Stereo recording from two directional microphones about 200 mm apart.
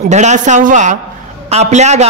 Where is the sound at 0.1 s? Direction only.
35° right (ahead or behind).